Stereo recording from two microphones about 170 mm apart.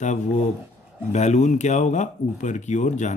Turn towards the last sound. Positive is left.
turn(degrees=45)  # may be behind; listen again after turning